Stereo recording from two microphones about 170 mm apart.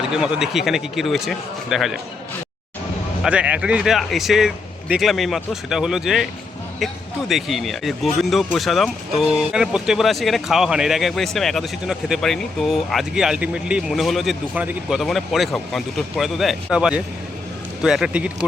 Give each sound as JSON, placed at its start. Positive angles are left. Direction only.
{"t": 0.1, "sound": "speech", "side_deg": -5}
{"t": 3.2, "sound": "speech", "side_deg": -5}